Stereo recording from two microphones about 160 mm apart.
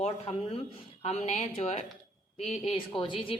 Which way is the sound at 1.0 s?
45° left (ahead or behind).